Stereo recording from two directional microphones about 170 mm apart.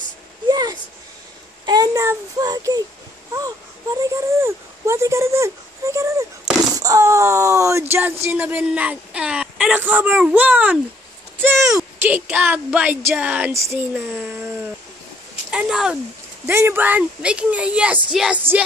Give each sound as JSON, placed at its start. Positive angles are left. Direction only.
{"t": 0.5, "sound": "a sound", "side_deg": -25}
{"t": 1.7, "sound": "a child's voice", "side_deg": -20}
{"t": 4.0, "sound": "speech", "side_deg": -15}
{"t": 15.5, "sound": "speech", "side_deg": -5}